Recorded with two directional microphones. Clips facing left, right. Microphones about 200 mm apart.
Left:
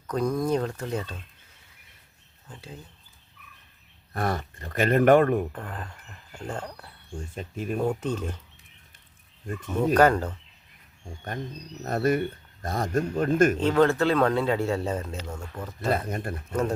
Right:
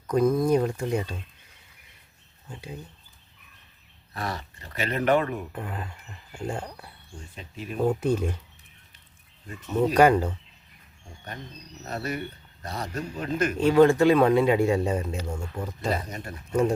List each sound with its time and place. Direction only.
0.1 s speech: 5° right (ahead or behind)
2.5 s speech: 15° right (ahead or behind)
4.1 s speech: 50° left (ahead or behind)
5.5 s speech: 10° right (ahead or behind)
7.3 s speech: 50° left (ahead or behind)
7.9 s speech: 10° right (ahead or behind)
9.9 s speech: 10° right (ahead or behind)
11.9 s speech: 50° left (ahead or behind)
13.6 s speech: 10° right (ahead or behind)
15.9 s speech: 55° left (ahead or behind)
16.5 s speech: 10° right (ahead or behind)